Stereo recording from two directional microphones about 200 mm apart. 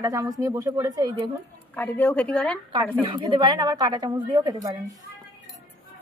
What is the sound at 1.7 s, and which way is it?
Speech, 10° left (ahead or behind).